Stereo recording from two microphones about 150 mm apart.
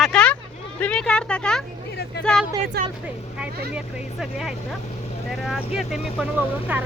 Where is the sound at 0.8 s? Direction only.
5° left (ahead or behind).